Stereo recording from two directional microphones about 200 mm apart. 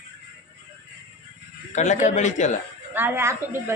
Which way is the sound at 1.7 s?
35° left (ahead or behind).